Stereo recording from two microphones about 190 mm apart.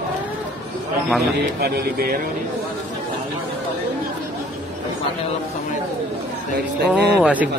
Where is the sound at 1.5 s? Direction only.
55° right (ahead or behind).